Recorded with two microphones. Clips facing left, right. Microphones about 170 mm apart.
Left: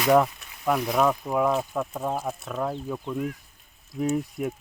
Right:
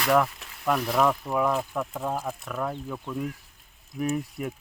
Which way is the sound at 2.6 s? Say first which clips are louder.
Left 3 dB; 10° left (ahead or behind).